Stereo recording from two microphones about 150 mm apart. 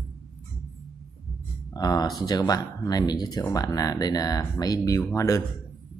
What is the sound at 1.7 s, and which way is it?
Speech, 25° left (ahead or behind).